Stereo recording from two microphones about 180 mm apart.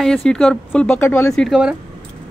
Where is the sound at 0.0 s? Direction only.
Centre (ahead or behind).